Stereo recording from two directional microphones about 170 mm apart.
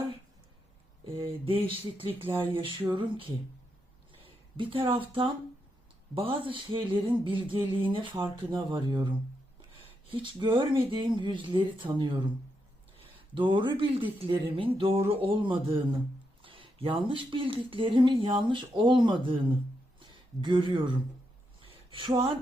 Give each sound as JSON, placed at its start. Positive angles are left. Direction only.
{"t": 1.0, "sound": "speech", "side_deg": -30}
{"t": 13.3, "sound": "speech", "side_deg": -30}
{"t": 20.0, "sound": "a sound", "side_deg": -30}